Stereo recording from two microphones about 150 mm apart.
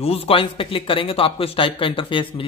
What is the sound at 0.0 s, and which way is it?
Speech, 40° left (ahead or behind).